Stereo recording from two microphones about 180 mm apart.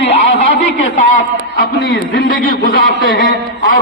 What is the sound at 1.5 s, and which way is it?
A man's voice, 75° left (ahead or behind).